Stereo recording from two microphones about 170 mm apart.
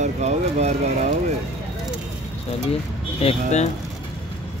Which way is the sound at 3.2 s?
40° left (ahead or behind).